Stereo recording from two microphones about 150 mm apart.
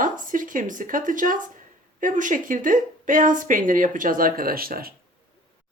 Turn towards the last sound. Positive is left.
turn(degrees=-80)